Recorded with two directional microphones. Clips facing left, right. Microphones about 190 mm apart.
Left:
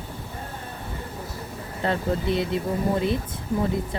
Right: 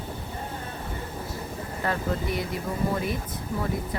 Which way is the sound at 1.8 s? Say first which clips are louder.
Left 4 dB; 25° left (ahead or behind).